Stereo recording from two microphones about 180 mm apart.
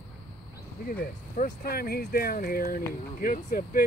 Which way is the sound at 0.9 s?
45° left (ahead or behind).